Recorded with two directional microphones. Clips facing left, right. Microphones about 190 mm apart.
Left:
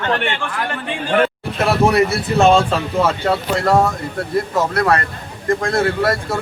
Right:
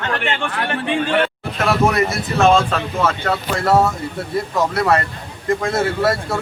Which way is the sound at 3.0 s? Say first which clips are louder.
Left 1 dB; 10° left (ahead or behind).